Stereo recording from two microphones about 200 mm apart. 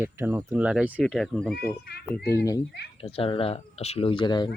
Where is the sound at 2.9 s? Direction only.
30° left (ahead or behind).